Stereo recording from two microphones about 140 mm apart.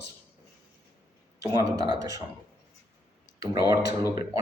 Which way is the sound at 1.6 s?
30° right (ahead or behind).